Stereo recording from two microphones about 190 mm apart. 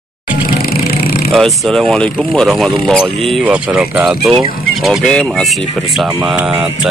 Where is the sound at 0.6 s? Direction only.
50° left (ahead or behind).